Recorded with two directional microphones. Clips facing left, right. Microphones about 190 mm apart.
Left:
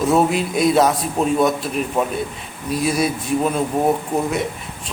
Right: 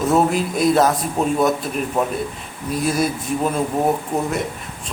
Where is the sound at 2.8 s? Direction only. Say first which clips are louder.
Even; centre (ahead or behind).